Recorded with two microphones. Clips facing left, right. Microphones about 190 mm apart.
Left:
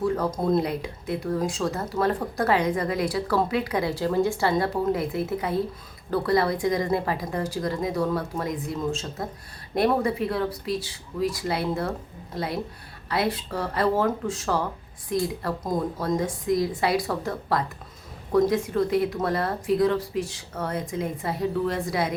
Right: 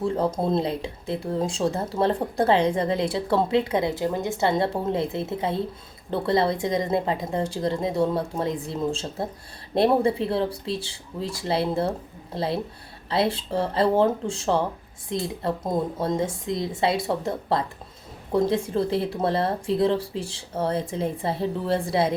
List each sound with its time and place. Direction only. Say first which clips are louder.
0.0 s speech: right 1 dB; 25° right (ahead or behind)